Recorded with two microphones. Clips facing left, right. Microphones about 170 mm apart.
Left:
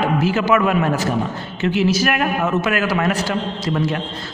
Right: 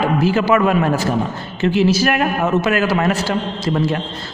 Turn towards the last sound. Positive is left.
turn(degrees=-30)  # may be behind; listen again after turning